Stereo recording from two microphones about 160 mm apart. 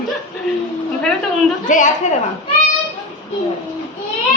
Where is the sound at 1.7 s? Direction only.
55° left (ahead or behind).